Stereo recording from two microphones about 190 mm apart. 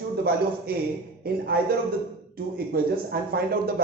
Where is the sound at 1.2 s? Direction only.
55° right (ahead or behind).